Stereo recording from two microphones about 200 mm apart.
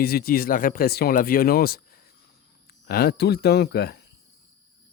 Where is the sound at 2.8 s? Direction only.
50° left (ahead or behind).